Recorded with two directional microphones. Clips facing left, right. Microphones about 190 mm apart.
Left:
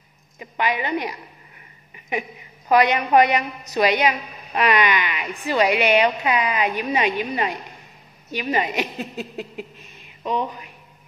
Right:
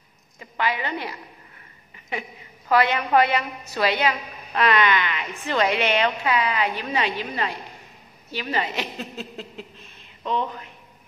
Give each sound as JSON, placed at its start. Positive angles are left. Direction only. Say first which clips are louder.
{"t": 0.4, "sound": "a woman's voice", "louder": "left 2 dB", "side_deg": 20}